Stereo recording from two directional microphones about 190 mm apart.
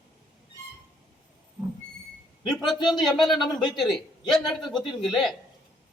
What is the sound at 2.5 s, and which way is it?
A man's voice, centre (ahead or behind).